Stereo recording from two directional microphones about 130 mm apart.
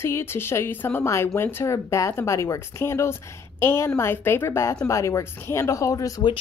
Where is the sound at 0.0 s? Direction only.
20° left (ahead or behind).